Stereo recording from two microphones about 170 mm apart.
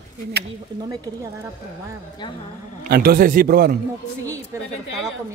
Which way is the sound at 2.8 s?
65° right (ahead or behind).